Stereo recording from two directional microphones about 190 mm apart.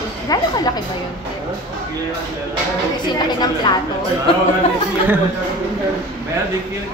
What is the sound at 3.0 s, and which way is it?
Speech, 20° left (ahead or behind).